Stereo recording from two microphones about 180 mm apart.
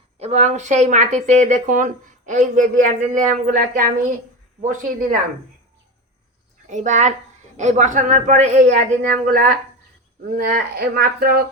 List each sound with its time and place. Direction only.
0.2 s speech: 40° right (ahead or behind)
6.7 s a woman's voice: 40° right (ahead or behind)